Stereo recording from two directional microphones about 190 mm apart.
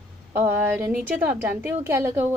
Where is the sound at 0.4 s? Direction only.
10° right (ahead or behind).